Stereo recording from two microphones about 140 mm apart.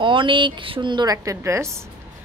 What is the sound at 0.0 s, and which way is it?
A woman's voice, 35° right (ahead or behind).